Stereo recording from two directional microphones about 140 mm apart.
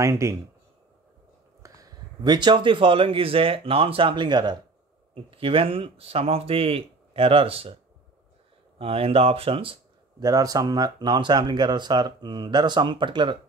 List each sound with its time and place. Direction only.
0.0 s speech: 20° right (ahead or behind)
1.6 s speech: 30° right (ahead or behind); by 7.7 s 45° right (ahead or behind)
8.7 s speech: 40° right (ahead or behind)
10.2 s speech: 25° right (ahead or behind)